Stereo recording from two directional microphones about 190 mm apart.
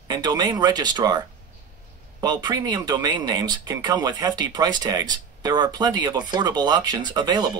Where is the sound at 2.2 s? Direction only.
20° right (ahead or behind).